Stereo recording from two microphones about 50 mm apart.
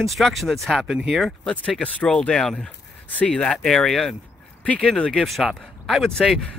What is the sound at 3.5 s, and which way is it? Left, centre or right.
Speech, centre.